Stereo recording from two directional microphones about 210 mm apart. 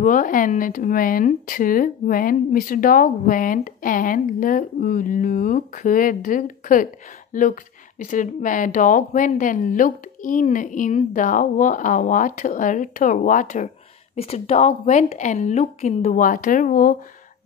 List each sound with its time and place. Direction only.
0.0 s speech: 40° left (ahead or behind)